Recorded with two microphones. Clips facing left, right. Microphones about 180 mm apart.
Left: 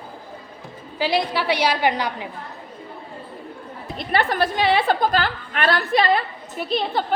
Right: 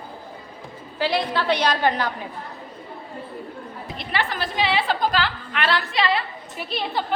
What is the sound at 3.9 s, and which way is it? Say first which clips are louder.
A woman's voice: left 6 dB; 50° left (ahead or behind).